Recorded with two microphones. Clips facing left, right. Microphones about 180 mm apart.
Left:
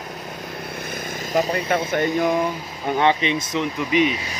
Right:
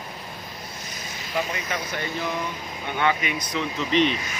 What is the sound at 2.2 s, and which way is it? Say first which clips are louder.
Speech: left 9 dB; 50° left (ahead or behind).